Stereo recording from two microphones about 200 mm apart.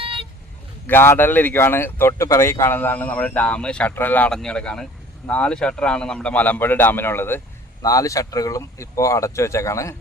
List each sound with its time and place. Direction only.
0.0 s vehicle: 25° right (ahead or behind)
0.9 s a man's voice: 10° left (ahead or behind)